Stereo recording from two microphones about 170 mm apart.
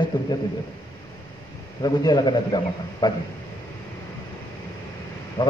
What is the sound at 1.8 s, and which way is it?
A man's voice, 25° left (ahead or behind).